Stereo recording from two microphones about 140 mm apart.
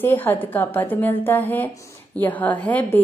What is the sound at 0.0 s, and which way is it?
A woman's voice, 15° left (ahead or behind).